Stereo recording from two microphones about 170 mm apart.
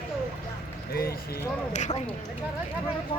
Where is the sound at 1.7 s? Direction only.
45° left (ahead or behind).